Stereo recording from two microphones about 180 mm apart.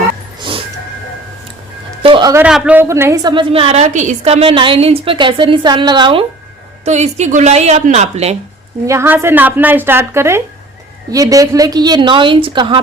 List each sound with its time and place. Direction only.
2.0 s a sound: 30° right (ahead or behind)
2.3 s a woman's voice: 5° right (ahead or behind)
3.3 s a woman's voice: 30° right (ahead or behind)
6.8 s speech: 40° right (ahead or behind)
8.9 s a woman's voice: 15° right (ahead or behind)